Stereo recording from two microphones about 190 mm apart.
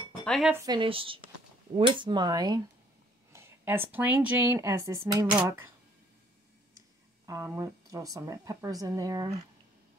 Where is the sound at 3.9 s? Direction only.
10° right (ahead or behind).